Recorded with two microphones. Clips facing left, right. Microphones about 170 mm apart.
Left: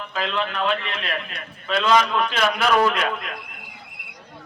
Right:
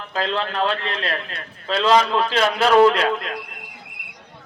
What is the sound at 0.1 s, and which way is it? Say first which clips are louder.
A man's voice: right 3 dB; 35° right (ahead or behind).